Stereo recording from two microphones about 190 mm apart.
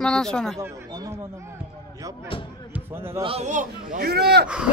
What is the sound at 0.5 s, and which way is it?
Speech, 20° right (ahead or behind).